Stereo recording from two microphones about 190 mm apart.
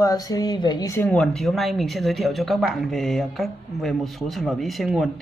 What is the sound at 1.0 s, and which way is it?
Speech, 5° left (ahead or behind).